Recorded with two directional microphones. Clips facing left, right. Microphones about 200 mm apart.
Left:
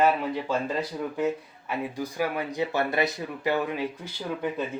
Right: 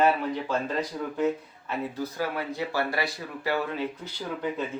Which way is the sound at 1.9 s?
15° left (ahead or behind).